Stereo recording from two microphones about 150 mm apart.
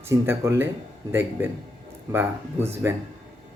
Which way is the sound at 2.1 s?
15° right (ahead or behind).